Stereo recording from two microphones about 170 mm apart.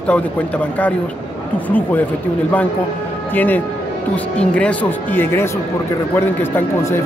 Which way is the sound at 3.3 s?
10° left (ahead or behind).